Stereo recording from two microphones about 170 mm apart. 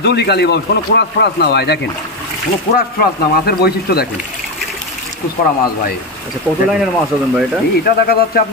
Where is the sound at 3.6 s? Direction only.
70° left (ahead or behind).